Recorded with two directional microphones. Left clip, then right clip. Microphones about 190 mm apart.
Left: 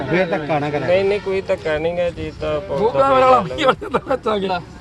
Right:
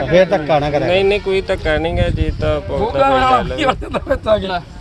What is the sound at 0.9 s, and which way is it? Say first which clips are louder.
Speech: left 1 dB; 30° right (ahead or behind).